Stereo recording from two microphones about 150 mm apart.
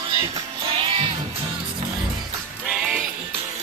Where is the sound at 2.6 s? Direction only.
5° right (ahead or behind).